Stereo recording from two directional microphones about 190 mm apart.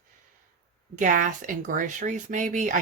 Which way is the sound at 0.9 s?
45° right (ahead or behind).